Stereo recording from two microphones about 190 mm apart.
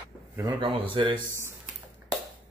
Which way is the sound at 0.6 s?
30° right (ahead or behind).